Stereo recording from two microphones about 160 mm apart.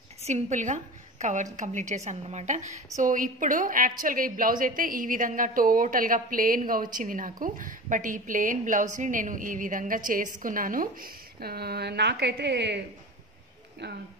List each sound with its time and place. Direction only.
0.2 s a woman's voice: 45° right (ahead or behind); by 12.8 s 90° right